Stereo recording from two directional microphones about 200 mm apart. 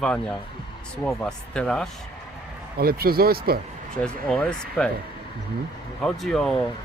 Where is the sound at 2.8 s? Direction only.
50° right (ahead or behind).